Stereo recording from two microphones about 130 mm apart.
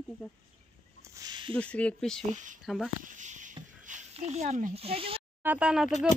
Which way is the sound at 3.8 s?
75° right (ahead or behind).